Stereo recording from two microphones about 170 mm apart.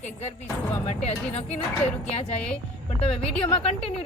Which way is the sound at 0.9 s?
40° left (ahead or behind).